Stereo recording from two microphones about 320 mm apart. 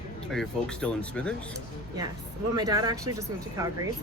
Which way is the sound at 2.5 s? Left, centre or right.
Centre.